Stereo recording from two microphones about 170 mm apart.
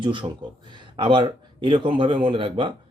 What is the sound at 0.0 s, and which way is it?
Speech, 30° right (ahead or behind).